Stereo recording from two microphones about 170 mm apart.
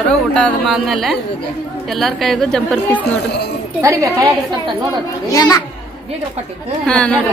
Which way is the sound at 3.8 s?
20° right (ahead or behind).